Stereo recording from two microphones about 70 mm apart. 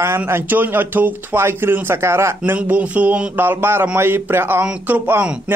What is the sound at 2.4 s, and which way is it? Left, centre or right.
Speech, right.